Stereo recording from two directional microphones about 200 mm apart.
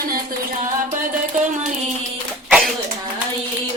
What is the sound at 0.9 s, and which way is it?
Music, 40° right (ahead or behind).